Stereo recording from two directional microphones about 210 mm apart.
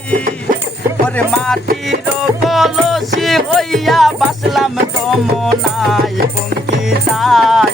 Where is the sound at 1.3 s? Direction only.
Centre (ahead or behind).